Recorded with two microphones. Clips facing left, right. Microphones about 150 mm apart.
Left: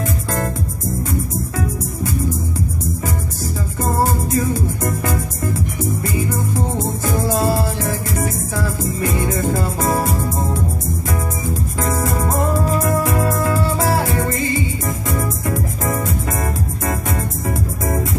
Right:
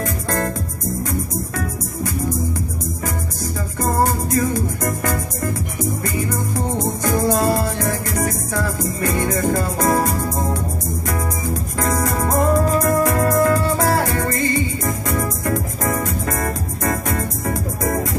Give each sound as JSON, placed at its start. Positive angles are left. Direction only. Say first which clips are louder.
{"t": 3.8, "sound": "music", "louder": "even", "side_deg": 5}
{"t": 7.4, "sound": "music", "louder": "even", "side_deg": 5}
{"t": 12.2, "sound": "music", "louder": "right 2 dB", "side_deg": 5}
{"t": 12.8, "sound": "music", "louder": "right 1 dB", "side_deg": 15}
{"t": 17.1, "sound": "music", "louder": "even", "side_deg": 5}